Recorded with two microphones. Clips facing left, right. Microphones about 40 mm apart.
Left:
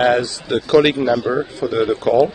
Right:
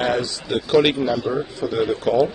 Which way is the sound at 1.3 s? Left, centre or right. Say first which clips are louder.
Left 4 dB; left.